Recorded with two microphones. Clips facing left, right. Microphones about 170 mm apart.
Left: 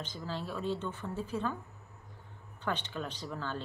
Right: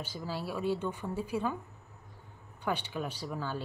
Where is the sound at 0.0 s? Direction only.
10° right (ahead or behind).